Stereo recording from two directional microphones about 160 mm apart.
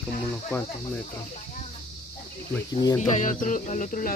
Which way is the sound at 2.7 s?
25° left (ahead or behind).